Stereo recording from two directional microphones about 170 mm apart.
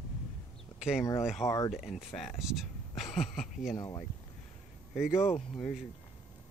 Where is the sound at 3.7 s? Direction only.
20° left (ahead or behind).